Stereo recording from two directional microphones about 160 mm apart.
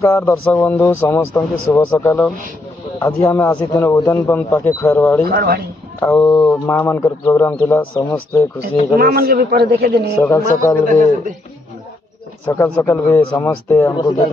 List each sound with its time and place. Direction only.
0.0 s speech: 20° left (ahead or behind)
5.3 s a man's voice: 75° right (ahead or behind)
5.9 s speech: 15° left (ahead or behind)
8.9 s a man's voice: 70° right (ahead or behind); by 10.1 s 85° right
10.2 s a man's voice: 20° left (ahead or behind)
10.9 s a man's voice: 50° right (ahead or behind)
12.6 s speech: 10° left (ahead or behind)
13.9 s a man's voice: 30° left (ahead or behind)